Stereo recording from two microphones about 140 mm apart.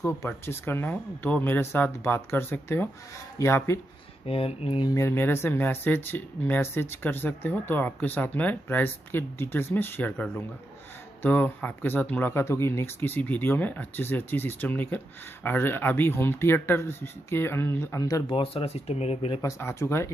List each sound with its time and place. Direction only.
0.0 s speech: 20° left (ahead or behind)
4.3 s speech: 45° left (ahead or behind)
4.8 s speech: 20° left (ahead or behind)
18.3 s speech: 40° left (ahead or behind)
19.4 s speech: 20° left (ahead or behind)